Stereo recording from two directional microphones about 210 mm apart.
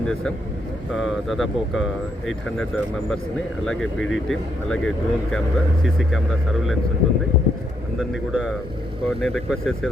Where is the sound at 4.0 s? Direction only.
65° left (ahead or behind).